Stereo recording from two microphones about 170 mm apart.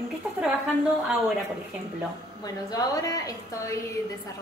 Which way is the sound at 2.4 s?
20° left (ahead or behind).